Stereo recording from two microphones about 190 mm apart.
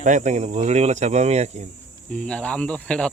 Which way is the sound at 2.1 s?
5° left (ahead or behind).